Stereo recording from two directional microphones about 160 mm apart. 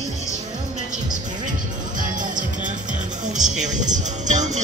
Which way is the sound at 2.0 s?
55° right (ahead or behind).